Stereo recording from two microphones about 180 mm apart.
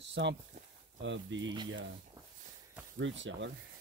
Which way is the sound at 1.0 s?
90° right.